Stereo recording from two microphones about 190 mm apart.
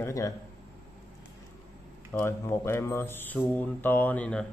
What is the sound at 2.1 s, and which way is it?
Speech, 15° left (ahead or behind).